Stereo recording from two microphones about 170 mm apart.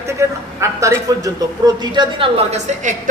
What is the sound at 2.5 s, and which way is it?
Speech, 40° right (ahead or behind).